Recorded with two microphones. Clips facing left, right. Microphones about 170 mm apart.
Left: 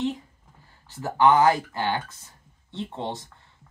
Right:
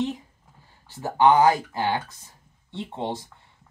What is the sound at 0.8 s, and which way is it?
Speech, 15° right (ahead or behind).